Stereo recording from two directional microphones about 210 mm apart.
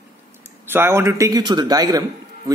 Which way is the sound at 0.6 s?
10° right (ahead or behind).